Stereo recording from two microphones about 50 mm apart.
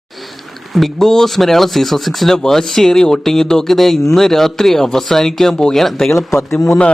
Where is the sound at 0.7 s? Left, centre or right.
Centre.